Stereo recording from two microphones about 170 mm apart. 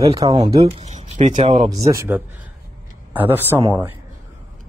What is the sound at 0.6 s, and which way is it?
Speech, 40° right (ahead or behind).